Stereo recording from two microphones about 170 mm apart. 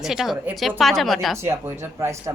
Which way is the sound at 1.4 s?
15° right (ahead or behind).